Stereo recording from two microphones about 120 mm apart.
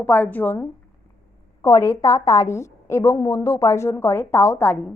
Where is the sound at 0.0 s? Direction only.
15° left (ahead or behind).